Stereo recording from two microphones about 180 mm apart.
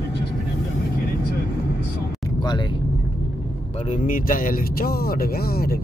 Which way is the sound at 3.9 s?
50° left (ahead or behind).